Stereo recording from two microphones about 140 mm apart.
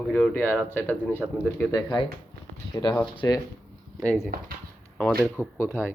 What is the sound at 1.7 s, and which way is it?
Speech, 30° left (ahead or behind).